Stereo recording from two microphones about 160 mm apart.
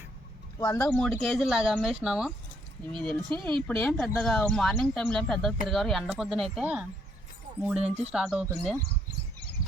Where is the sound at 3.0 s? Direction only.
5° left (ahead or behind).